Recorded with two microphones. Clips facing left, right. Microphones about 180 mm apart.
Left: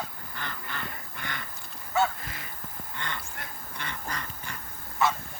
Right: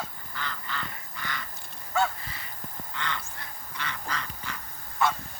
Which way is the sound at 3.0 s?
50° left (ahead or behind).